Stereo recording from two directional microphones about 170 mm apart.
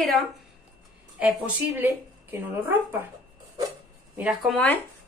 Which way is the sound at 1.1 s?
10° right (ahead or behind).